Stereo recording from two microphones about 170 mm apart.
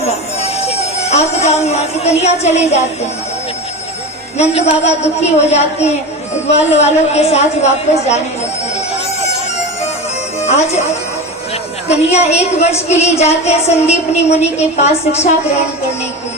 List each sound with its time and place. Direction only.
0.3 s speech: 40° left (ahead or behind)
4.4 s a woman's voice: 40° left (ahead or behind)
10.4 s speech: 40° left (ahead or behind)
11.9 s a woman's voice: 40° left (ahead or behind)